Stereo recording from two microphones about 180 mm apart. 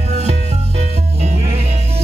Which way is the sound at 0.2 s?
35° right (ahead or behind).